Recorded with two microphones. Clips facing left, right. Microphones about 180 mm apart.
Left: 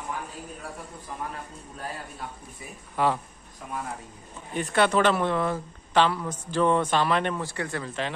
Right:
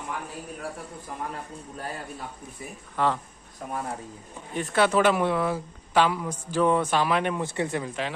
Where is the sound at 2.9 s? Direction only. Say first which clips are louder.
Left 1 dB; 10° left (ahead or behind).